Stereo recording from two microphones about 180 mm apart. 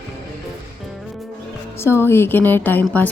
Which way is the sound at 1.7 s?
15° left (ahead or behind).